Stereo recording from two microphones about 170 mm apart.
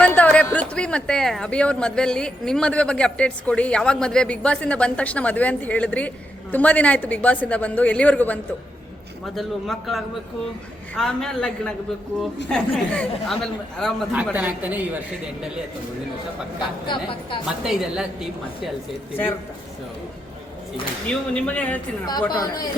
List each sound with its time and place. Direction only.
0.0 s speech: 10° left (ahead or behind)
14.3 s speech: 10° right (ahead or behind)
16.8 s a woman's voice: 30° left (ahead or behind)
17.4 s speech: 5° right (ahead or behind)
19.1 s speech: 10° left (ahead or behind)
21.1 s speech: 10° left (ahead or behind)
22.3 s a woman's voice: 25° left (ahead or behind)